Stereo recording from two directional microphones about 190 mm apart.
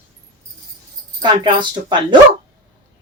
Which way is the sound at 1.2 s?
25° right (ahead or behind).